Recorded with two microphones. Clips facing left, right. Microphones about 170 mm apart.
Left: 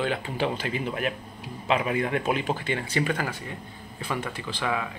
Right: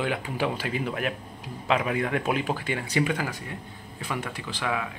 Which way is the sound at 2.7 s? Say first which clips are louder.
Right 1 dB; 10° right (ahead or behind).